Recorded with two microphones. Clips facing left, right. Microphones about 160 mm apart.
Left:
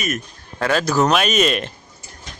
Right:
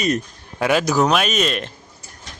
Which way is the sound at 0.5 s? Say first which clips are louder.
Right 1 dB; 15° right (ahead or behind).